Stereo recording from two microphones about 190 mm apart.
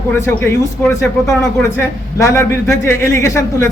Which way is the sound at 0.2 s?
15° left (ahead or behind).